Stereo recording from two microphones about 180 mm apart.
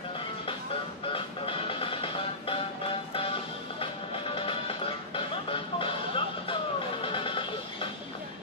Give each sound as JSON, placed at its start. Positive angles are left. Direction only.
{"t": 1.1, "sound": "music", "side_deg": 30}
{"t": 4.4, "sound": "music", "side_deg": 30}